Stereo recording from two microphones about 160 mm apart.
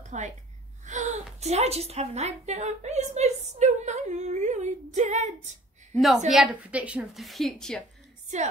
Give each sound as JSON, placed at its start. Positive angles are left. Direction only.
{"t": 0.1, "sound": "a woman's voice", "side_deg": -45}
{"t": 5.9, "sound": "a woman's voice", "side_deg": 0}